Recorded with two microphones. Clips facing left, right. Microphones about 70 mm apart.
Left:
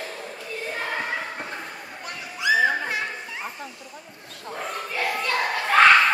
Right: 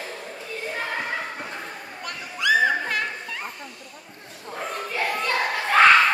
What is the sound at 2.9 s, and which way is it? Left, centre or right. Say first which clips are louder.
Children playing: right 1 dB; right.